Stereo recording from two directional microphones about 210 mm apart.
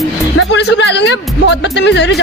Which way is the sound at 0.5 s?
55° left (ahead or behind).